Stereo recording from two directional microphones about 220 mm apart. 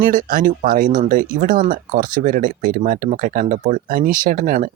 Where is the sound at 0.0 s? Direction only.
40° right (ahead or behind).